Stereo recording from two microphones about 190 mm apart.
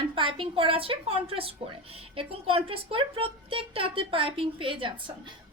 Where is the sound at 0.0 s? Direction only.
25° right (ahead or behind).